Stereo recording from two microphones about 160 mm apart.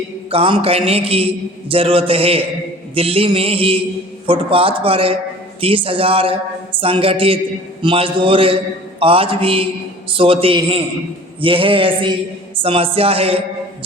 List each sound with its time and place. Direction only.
0.3 s a man's voice: 35° right (ahead or behind)